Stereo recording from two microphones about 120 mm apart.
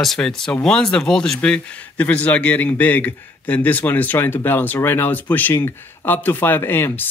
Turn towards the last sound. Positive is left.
turn(degrees=20)  # may be behind; listen again after turning